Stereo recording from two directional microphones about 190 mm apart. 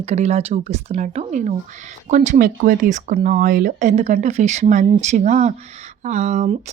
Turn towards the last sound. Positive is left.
turn(degrees=-40)  # may be behind; listen again after turning